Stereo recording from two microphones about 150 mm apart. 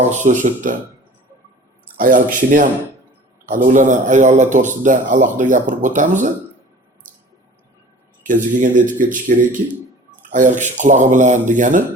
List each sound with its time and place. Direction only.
0.1 s speech: 55° right (ahead or behind)
2.0 s speech: 65° right (ahead or behind)
8.3 s speech: 60° right (ahead or behind)